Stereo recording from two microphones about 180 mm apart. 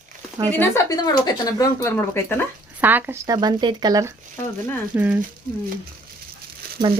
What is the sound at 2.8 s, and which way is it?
Speech, 10° right (ahead or behind).